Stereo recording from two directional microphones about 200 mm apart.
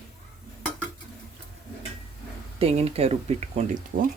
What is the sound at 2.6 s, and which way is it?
Speech, 30° right (ahead or behind).